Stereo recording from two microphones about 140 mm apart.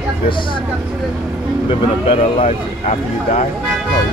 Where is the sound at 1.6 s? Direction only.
45° left (ahead or behind).